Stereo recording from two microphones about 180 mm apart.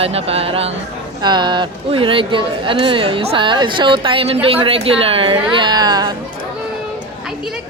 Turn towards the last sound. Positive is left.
turn(degrees=-20)  # may be behind; listen again after turning